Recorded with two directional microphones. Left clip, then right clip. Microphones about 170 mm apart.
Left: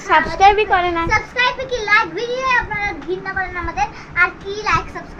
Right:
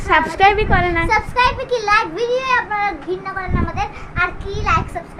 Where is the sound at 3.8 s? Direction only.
10° right (ahead or behind).